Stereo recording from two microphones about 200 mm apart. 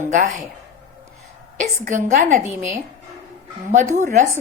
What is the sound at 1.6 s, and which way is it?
Speech, 40° right (ahead or behind).